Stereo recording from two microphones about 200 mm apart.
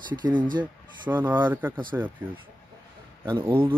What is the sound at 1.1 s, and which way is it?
Speech, 10° right (ahead or behind).